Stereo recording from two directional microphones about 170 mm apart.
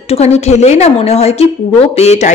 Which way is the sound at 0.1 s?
40° left (ahead or behind).